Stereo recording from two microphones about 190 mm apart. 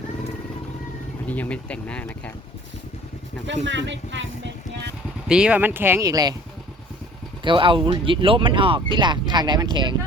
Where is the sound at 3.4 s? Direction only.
70° right (ahead or behind).